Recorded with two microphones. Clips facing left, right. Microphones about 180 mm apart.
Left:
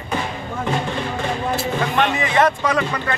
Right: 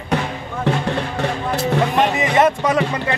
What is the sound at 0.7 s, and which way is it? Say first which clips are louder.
Music: right 3 dB; 70° right (ahead or behind).